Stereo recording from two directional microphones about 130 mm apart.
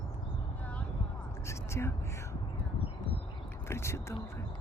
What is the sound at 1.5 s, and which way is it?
Whispering, 20° left (ahead or behind).